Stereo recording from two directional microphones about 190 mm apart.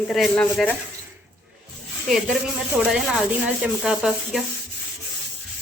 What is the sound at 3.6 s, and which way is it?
Speech, centre (ahead or behind).